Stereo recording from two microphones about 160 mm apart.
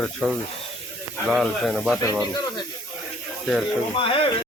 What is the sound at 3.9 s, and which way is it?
Speech, 35° left (ahead or behind).